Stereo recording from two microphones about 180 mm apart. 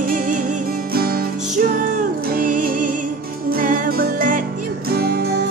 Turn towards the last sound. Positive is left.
turn(degrees=-50)  # may be behind; listen again after turning